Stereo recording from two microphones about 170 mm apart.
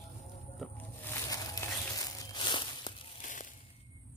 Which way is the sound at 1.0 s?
15° left (ahead or behind).